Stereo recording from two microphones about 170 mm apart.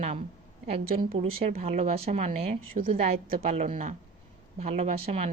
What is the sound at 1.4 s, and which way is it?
A woman's voice, 40° right (ahead or behind).